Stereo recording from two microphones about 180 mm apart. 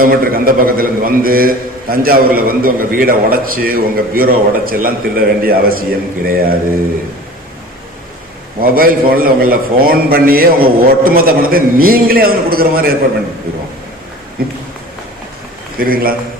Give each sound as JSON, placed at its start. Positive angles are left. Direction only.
{"t": 0.0, "sound": "a man's voice", "side_deg": -55}
{"t": 8.6, "sound": "a man's voice", "side_deg": -55}
{"t": 14.4, "sound": "a man's voice", "side_deg": -55}
{"t": 15.8, "sound": "a man's voice", "side_deg": -55}